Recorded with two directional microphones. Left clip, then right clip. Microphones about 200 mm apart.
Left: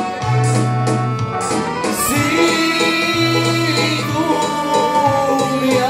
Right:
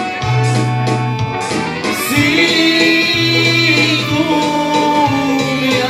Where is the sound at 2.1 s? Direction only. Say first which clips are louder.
Right 4 dB; 35° left (ahead or behind).